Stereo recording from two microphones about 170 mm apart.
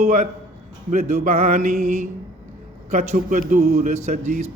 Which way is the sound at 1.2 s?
45° right (ahead or behind).